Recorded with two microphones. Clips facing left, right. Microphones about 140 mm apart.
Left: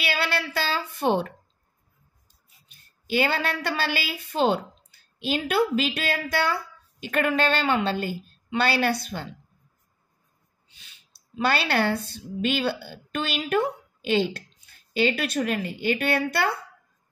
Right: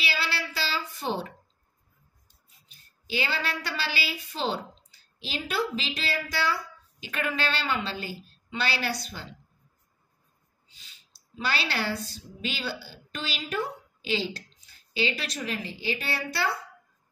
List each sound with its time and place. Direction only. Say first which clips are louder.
0.0 s child singing: left 5 dB; 60° left (ahead or behind)
0.6 s a sound: left 5 dB; 60° left (ahead or behind)
3.1 s a woman's voice: left 6 dB; 55° left (ahead or behind)
11.3 s speech: left 7 dB; 55° left (ahead or behind)